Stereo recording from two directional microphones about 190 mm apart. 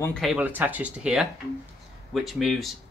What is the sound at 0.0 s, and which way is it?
Speech, 5° left (ahead or behind).